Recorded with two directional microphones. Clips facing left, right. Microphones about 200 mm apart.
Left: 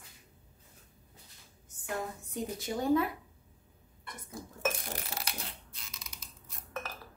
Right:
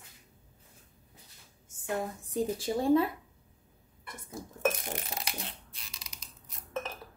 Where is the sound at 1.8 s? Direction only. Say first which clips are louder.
Right 3 dB; 30° right (ahead or behind).